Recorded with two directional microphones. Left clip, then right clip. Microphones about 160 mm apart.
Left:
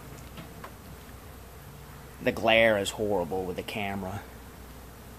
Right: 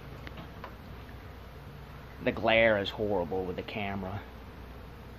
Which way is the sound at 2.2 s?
20° left (ahead or behind).